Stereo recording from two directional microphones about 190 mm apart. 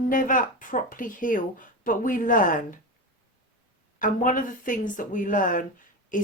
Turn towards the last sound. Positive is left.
turn(degrees=45)  # may be behind; listen again after turning